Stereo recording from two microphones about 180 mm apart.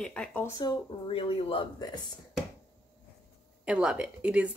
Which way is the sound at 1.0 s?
30° left (ahead or behind).